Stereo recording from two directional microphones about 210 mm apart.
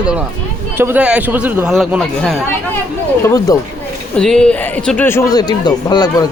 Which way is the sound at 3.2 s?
15° left (ahead or behind).